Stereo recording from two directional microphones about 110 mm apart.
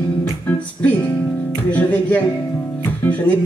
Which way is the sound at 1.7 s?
15° left (ahead or behind).